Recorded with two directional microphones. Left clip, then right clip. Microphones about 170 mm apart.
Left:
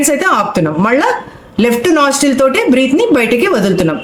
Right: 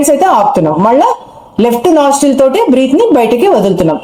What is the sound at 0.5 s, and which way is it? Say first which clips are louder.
A woman's voice: right 4 dB; 5° left (ahead or behind).